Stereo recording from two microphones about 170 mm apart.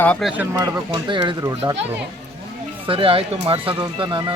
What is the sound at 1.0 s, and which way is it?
Speech, 30° right (ahead or behind).